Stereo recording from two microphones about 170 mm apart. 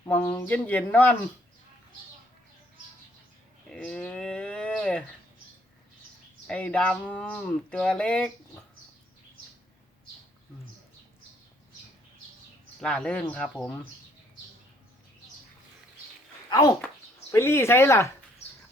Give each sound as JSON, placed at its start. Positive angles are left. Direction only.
{"t": 0.0, "sound": "speech", "side_deg": 10}
{"t": 3.7, "sound": "livestock", "side_deg": 5}
{"t": 6.5, "sound": "speech", "side_deg": 5}
{"t": 12.8, "sound": "speech", "side_deg": 5}
{"t": 16.5, "sound": "a child's voice", "side_deg": 20}